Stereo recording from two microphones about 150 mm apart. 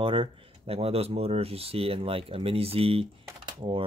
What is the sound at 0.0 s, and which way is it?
Speech, 35° right (ahead or behind).